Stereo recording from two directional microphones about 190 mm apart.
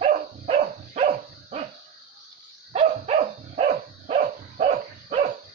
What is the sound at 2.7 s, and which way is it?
Dog, 35° right (ahead or behind).